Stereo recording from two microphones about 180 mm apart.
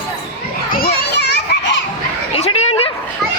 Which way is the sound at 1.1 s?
65° left (ahead or behind).